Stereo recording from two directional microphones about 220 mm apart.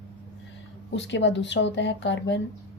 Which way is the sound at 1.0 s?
55° left (ahead or behind).